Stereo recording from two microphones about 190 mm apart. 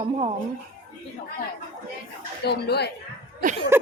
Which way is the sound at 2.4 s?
60° left (ahead or behind).